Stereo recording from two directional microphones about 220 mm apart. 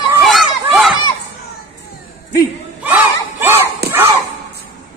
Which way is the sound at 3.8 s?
45° right (ahead or behind).